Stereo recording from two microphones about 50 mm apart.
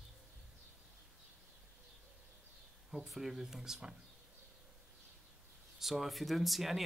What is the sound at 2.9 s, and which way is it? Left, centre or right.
Speech, centre.